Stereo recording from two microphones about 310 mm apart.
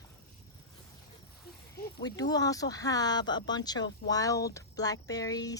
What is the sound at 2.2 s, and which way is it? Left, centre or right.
Speech, centre.